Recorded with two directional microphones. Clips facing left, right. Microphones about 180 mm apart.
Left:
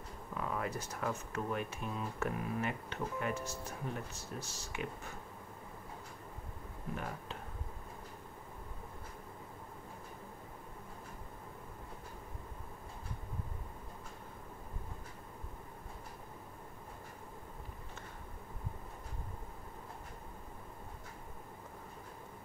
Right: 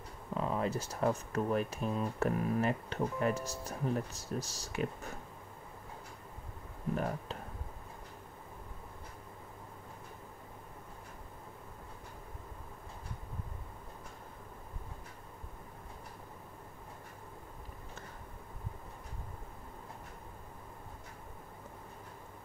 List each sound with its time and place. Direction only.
0.3 s speech: 25° right (ahead or behind)